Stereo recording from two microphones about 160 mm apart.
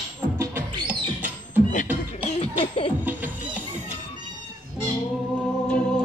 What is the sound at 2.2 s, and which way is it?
Music, 35° left (ahead or behind).